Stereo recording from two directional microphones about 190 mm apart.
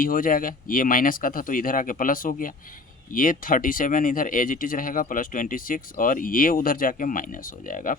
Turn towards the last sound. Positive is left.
turn(degrees=45)  # may be behind; listen again after turning